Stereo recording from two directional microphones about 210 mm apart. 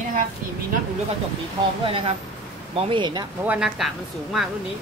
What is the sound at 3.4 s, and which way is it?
Speech, 5° right (ahead or behind).